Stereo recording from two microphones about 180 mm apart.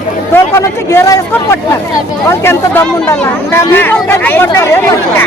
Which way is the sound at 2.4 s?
15° left (ahead or behind).